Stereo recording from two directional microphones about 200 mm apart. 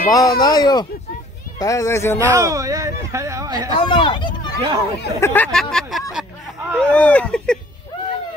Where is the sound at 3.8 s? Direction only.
20° left (ahead or behind).